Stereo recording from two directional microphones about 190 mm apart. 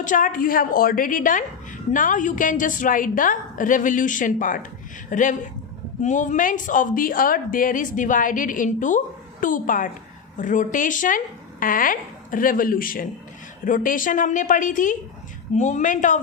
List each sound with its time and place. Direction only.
0.0 s a woman's voice: 45° left (ahead or behind)